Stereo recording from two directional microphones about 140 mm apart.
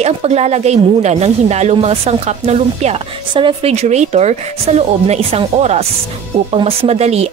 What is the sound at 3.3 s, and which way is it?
Speech, 35° right (ahead or behind).